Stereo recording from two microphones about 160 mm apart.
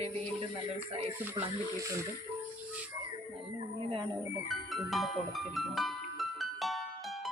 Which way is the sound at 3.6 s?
35° right (ahead or behind).